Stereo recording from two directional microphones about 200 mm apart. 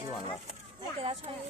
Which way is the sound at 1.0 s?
30° right (ahead or behind).